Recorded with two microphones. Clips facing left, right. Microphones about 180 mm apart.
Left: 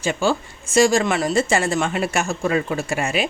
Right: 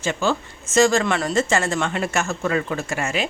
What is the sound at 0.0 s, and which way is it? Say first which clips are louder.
A woman's voice: left 2 dB; 15° left (ahead or behind).